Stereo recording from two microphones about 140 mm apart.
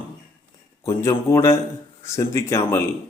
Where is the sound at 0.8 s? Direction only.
20° left (ahead or behind).